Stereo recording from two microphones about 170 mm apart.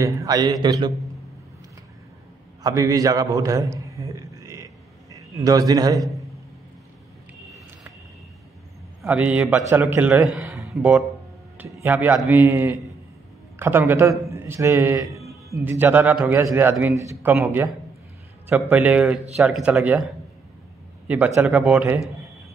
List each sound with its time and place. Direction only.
0.0 s speech: 20° right (ahead or behind)
2.6 s a sound: 20° right (ahead or behind)
5.1 s a man's voice: 20° right (ahead or behind)
9.0 s a man's voice: 10° right (ahead or behind)
21.4 s a man's voice: 10° right (ahead or behind)